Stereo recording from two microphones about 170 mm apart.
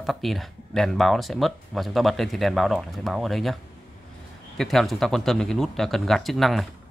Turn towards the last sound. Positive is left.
turn(degrees=0)  # may be behind; listen again after turning